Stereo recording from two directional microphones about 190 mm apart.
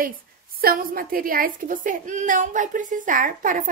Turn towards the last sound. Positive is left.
turn(degrees=-45)  # may be behind; listen again after turning